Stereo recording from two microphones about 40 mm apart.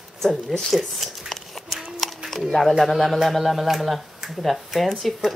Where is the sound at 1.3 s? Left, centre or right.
Centre.